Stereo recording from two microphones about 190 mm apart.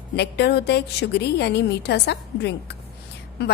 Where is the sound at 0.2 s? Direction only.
60° left (ahead or behind).